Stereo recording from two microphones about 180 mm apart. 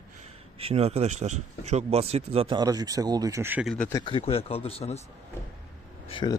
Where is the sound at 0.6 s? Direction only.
35° right (ahead or behind); by 3.7 s 10° right (ahead or behind).